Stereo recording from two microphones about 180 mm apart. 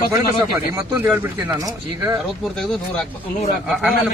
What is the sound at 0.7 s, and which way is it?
Speech, 10° right (ahead or behind).